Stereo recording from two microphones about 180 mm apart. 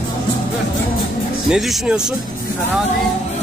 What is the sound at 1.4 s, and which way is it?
Speech, centre (ahead or behind).